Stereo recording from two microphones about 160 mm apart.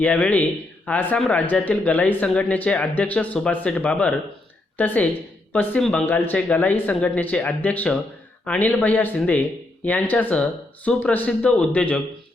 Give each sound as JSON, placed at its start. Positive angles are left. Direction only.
{"t": 0.0, "sound": "speech", "side_deg": 10}